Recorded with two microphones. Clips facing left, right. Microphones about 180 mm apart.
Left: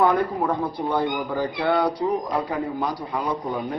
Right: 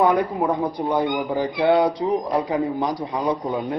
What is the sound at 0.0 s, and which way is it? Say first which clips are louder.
A man's voice: right 1 dB; 15° right (ahead or behind).